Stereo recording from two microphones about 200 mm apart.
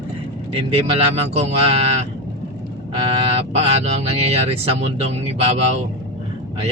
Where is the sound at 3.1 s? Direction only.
30° right (ahead or behind).